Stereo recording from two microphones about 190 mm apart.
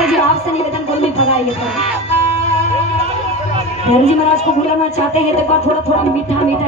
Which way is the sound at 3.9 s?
35° left (ahead or behind).